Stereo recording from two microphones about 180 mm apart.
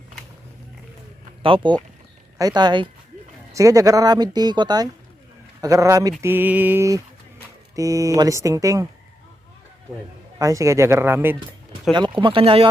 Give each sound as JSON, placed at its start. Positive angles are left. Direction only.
{"t": 1.4, "sound": "speech", "side_deg": -30}
{"t": 5.5, "sound": "a sound", "side_deg": -15}
{"t": 10.3, "sound": "speech", "side_deg": -15}
{"t": 11.9, "sound": "speech", "side_deg": -25}